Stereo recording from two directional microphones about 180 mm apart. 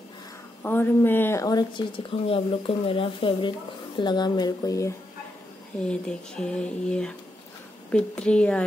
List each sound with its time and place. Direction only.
0.6 s speech: 10° left (ahead or behind)
5.9 s a woman's voice: 5° left (ahead or behind)